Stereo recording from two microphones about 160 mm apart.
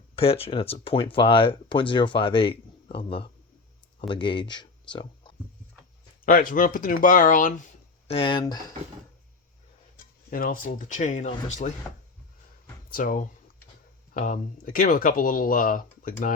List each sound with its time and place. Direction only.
0.2 s speech: 35° left (ahead or behind)
6.2 s speech: 60° left (ahead or behind); by 8.7 s 25° left (ahead or behind)
10.2 s speech: 65° left (ahead or behind)
11.9 s speech: 5° left (ahead or behind)
12.9 s speech: 60° left (ahead or behind)